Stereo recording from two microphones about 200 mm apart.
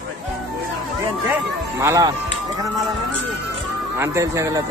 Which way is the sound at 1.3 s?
15° right (ahead or behind).